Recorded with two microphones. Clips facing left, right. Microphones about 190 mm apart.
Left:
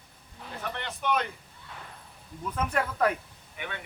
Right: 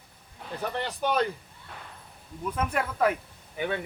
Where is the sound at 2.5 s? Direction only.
5° right (ahead or behind).